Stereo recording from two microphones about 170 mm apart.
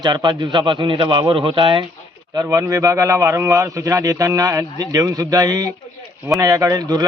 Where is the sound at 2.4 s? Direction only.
15° right (ahead or behind).